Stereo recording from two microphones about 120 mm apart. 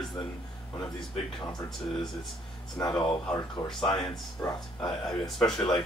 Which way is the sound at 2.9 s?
5° left (ahead or behind).